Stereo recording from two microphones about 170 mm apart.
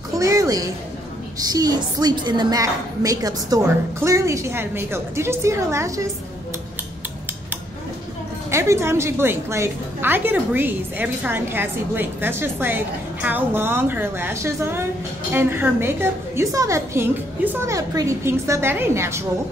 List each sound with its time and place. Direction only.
0.2 s a sound: 20° right (ahead or behind)
1.4 s a woman's voice: 20° right (ahead or behind)
8.5 s a woman's voice: 15° right (ahead or behind)